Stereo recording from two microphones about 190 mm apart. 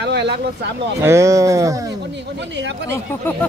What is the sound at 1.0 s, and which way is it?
Speech, 15° right (ahead or behind).